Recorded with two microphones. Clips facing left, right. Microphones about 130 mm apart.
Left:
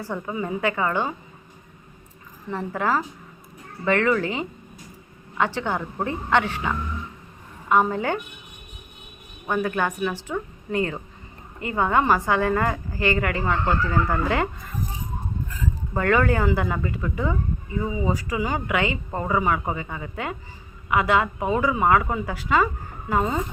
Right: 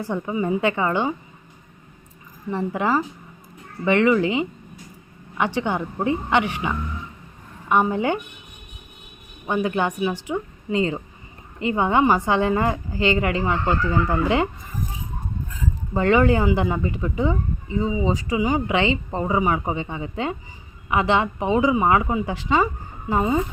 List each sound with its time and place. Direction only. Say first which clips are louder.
0.0 s speech: right 4 dB; 15° right (ahead or behind)
2.5 s speech: right 2 dB; 20° right (ahead or behind)
9.5 s speech: right 2 dB; 20° right (ahead or behind)
16.0 s speech: right 3 dB; 20° right (ahead or behind)